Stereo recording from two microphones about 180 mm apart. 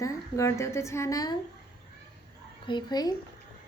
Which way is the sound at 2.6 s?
25° left (ahead or behind).